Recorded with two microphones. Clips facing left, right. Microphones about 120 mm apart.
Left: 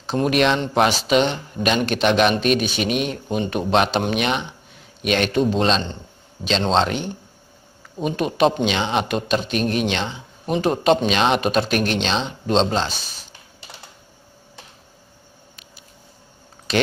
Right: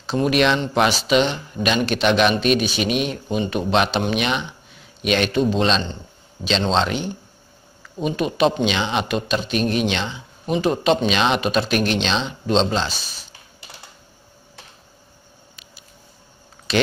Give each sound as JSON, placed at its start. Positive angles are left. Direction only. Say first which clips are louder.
{"t": 0.0, "sound": "a man's voice", "louder": "even", "side_deg": 45}
{"t": 16.7, "sound": "speech", "louder": "even", "side_deg": 50}